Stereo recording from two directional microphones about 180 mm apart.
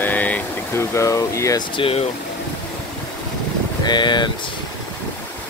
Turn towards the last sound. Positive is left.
turn(degrees=25)  # may be behind; listen again after turning